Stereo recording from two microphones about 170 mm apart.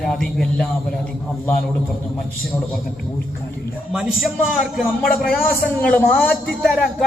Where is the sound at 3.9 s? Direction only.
5° right (ahead or behind).